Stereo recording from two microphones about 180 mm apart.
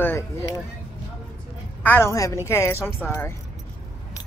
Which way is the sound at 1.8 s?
15° left (ahead or behind).